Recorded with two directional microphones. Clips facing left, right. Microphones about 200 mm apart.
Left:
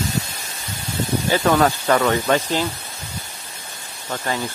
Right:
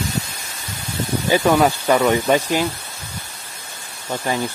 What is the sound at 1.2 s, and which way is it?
Speech, 10° right (ahead or behind).